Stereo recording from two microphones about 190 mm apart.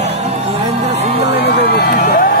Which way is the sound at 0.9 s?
65° left (ahead or behind).